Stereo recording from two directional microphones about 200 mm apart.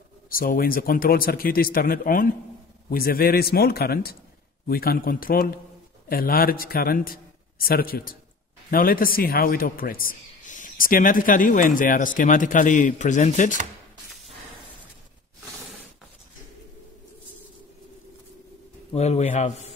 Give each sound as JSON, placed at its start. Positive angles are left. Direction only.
{"t": 0.3, "sound": "a man's voice", "side_deg": 45}
{"t": 18.9, "sound": "a man's voice", "side_deg": 35}